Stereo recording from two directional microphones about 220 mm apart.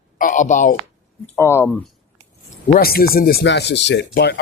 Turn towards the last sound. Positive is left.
turn(degrees=50)  # may be behind; listen again after turning